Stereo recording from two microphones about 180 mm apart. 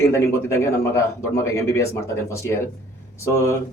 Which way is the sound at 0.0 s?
15° left (ahead or behind).